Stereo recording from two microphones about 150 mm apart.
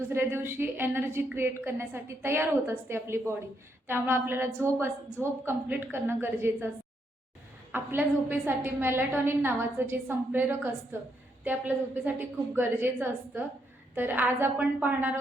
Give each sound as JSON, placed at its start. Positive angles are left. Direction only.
{"t": 0.1, "sound": "a woman's voice", "side_deg": -15}
{"t": 7.7, "sound": "a woman's voice", "side_deg": -15}